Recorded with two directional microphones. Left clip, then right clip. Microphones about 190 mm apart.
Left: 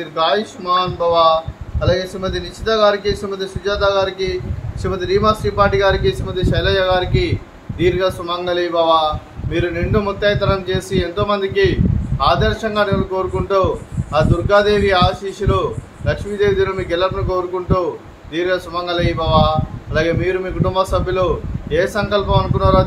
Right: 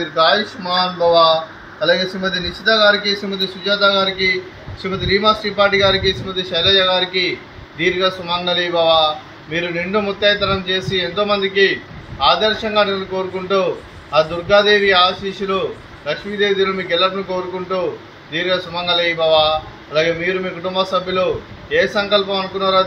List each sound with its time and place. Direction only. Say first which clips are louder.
0.1 s a man's voice: right 2 dB; 20° left (ahead or behind)
2.6 s a man's voice: right 1 dB; 20° left (ahead or behind)